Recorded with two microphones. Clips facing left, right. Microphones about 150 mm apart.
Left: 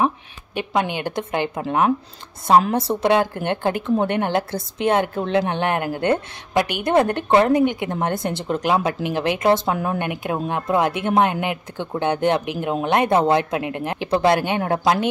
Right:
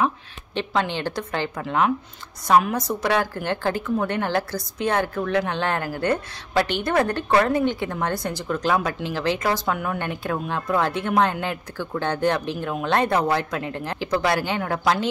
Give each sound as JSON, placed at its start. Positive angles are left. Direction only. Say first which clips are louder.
{"t": 0.6, "sound": "a woman's voice", "louder": "left 2 dB", "side_deg": 15}